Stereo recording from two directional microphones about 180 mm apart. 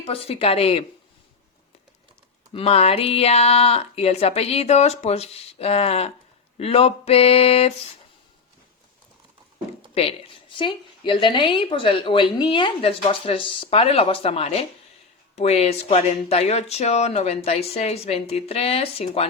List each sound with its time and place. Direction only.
0.0 s speech: 35° left (ahead or behind)
2.5 s speech: 35° left (ahead or behind)
9.9 s a woman's voice: 35° left (ahead or behind)